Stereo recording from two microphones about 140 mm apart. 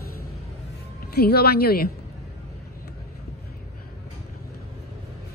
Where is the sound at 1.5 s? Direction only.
90° left.